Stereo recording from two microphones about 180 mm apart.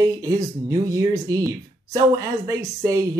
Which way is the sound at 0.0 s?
20° right (ahead or behind).